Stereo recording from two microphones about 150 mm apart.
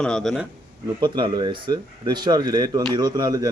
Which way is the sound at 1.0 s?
30° right (ahead or behind).